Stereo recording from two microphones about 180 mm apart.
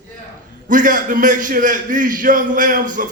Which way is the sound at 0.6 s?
45° right (ahead or behind).